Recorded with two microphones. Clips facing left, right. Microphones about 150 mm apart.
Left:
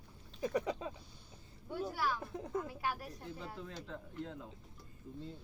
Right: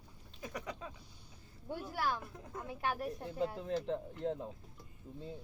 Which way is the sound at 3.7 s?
30° right (ahead or behind).